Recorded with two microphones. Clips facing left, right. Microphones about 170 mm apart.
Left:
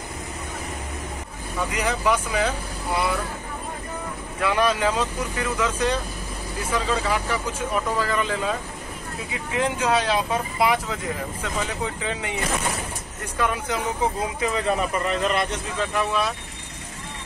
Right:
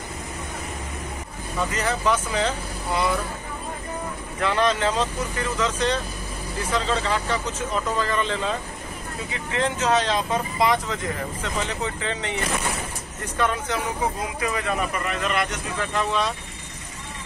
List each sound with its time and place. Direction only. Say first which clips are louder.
1.6 s speech: even; 10° left (ahead or behind)
4.4 s speech: even; 10° left (ahead or behind)
13.4 s speech: even; 10° left (ahead or behind)
14.4 s speech: left 2 dB; 25° left (ahead or behind)
15.8 s speech: even; 10° left (ahead or behind)